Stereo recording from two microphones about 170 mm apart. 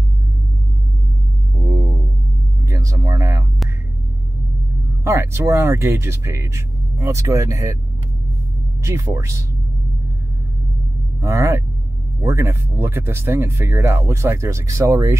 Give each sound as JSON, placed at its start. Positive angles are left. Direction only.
{"t": 1.6, "sound": "a sound", "side_deg": -15}
{"t": 5.0, "sound": "speech", "side_deg": -15}
{"t": 8.8, "sound": "speech", "side_deg": -15}
{"t": 11.1, "sound": "speech", "side_deg": -15}